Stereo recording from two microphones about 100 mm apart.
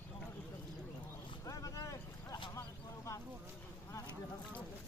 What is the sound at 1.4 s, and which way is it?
Speech, 35° left (ahead or behind).